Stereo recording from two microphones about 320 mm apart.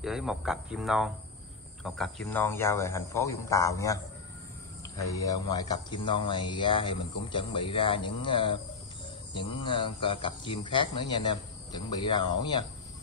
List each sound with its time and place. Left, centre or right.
0.0 s speech: centre